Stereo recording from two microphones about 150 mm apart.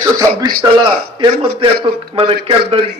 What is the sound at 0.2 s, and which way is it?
Speech, 20° right (ahead or behind).